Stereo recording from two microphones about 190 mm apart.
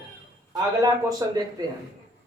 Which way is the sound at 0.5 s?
20° right (ahead or behind).